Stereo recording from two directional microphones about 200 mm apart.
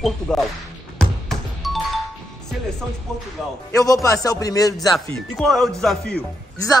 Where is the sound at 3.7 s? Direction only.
15° left (ahead or behind).